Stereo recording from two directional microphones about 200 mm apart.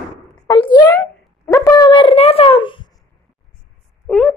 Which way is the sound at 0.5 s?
20° left (ahead or behind).